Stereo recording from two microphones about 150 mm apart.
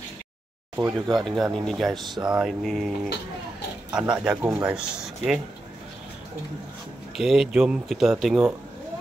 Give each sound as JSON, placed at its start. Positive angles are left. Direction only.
{"t": 0.7, "sound": "speech", "side_deg": -25}
{"t": 1.2, "sound": "speech", "side_deg": 0}
{"t": 3.9, "sound": "speech", "side_deg": -5}
{"t": 7.2, "sound": "speech", "side_deg": -5}